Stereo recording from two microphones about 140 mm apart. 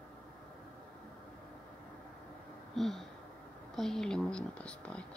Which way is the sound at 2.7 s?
Centre (ahead or behind).